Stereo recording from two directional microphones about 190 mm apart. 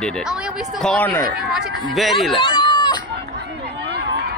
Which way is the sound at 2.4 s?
25° left (ahead or behind).